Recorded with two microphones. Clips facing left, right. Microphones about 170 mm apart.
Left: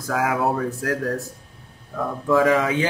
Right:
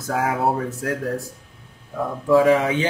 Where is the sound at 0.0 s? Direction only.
30° right (ahead or behind).